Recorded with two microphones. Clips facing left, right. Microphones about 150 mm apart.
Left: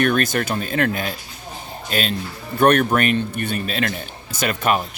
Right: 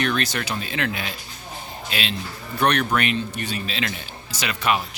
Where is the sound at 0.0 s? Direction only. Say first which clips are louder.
Left 5 dB; 50° left (ahead or behind).